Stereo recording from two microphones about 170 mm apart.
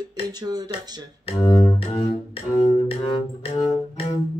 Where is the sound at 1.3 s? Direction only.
25° left (ahead or behind).